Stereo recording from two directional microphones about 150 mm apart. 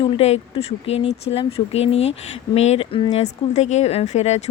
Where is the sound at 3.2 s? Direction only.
50° left (ahead or behind).